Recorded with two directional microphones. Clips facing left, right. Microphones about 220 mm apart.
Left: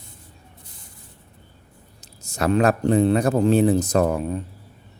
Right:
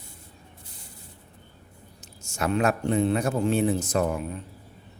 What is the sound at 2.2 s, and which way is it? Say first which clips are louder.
Speech: left 5 dB; 35° left (ahead or behind).